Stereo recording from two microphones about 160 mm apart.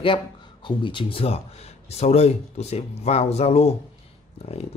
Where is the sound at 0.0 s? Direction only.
30° left (ahead or behind).